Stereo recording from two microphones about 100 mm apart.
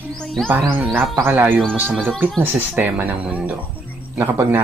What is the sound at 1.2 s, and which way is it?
A man's voice, 20° right (ahead or behind).